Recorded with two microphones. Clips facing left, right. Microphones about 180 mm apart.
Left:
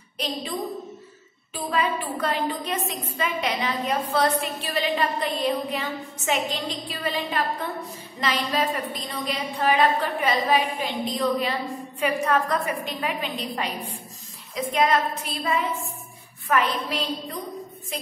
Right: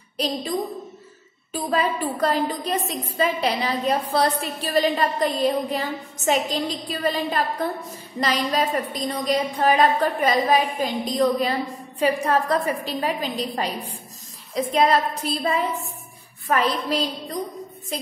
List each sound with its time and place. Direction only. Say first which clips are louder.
1.5 s a woman's voice: right 2 dB; 40° right (ahead or behind)